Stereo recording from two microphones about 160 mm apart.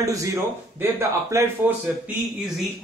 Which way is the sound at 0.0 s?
20° right (ahead or behind).